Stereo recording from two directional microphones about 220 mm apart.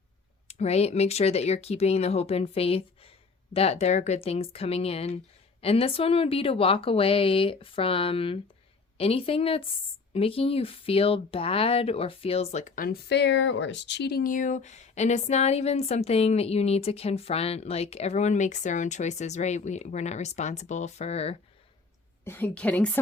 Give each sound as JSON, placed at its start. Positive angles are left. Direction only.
{"t": 0.4, "sound": "speech", "side_deg": 30}
{"t": 22.2, "sound": "a woman's voice", "side_deg": 10}